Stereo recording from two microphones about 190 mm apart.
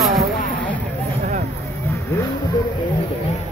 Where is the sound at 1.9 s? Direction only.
15° left (ahead or behind).